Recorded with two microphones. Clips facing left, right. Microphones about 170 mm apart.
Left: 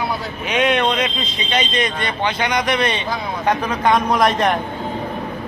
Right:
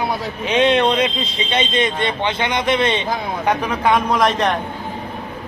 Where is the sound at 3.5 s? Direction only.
5° right (ahead or behind).